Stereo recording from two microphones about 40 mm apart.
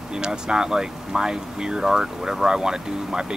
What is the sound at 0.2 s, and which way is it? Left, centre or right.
Speech, centre.